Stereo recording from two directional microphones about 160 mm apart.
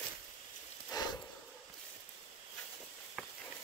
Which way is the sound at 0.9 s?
25° left (ahead or behind).